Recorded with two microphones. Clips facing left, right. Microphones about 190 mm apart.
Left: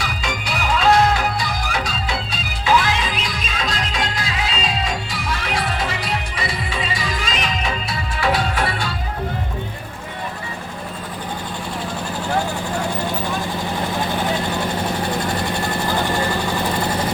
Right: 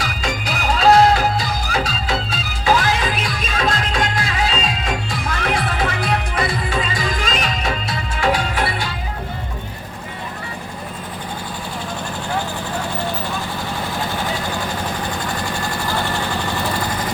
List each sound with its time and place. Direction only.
0.0 s music: 40° right (ahead or behind)